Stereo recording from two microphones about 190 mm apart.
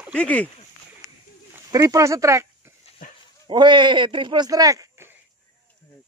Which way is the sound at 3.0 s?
45° left (ahead or behind).